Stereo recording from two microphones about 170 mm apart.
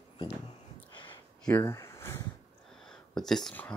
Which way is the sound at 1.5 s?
15° left (ahead or behind).